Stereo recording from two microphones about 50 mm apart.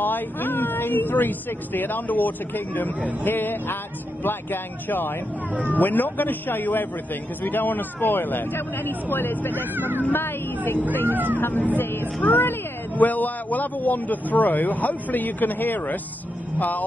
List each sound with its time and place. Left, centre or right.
0.0 s speech: left
9.8 s speech: right
10.1 s speech: left
10.8 s speech: left
11.1 s speech: right
11.3 s speech: left